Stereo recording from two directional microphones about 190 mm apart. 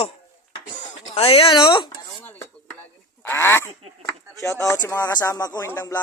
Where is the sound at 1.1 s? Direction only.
30° left (ahead or behind).